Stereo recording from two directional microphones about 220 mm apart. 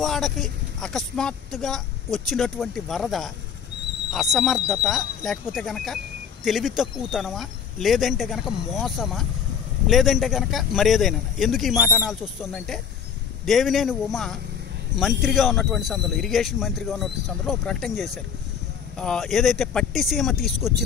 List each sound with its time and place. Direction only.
0.0 s speech: centre (ahead or behind)